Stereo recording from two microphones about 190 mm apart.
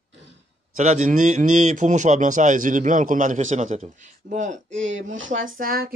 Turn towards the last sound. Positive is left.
turn(degrees=-50)  # may be behind; listen again after turning